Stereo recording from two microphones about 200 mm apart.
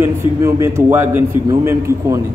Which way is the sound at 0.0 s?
15° right (ahead or behind).